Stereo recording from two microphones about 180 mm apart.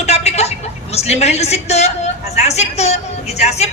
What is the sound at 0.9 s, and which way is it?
Speech, 35° left (ahead or behind).